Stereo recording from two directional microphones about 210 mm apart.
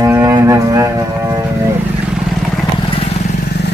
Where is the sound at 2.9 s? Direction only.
30° left (ahead or behind).